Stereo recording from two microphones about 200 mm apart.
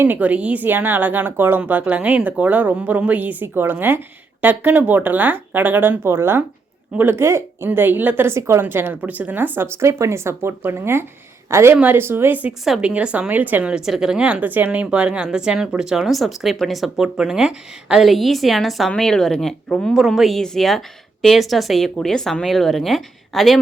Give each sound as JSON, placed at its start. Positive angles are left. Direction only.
{"t": 0.0, "sound": "a woman's voice", "side_deg": -10}